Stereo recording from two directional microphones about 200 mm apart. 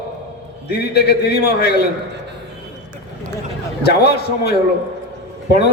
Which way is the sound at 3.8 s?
55° left (ahead or behind).